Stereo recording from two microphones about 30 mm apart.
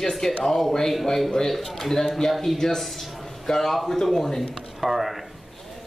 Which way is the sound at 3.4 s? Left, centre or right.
Centre.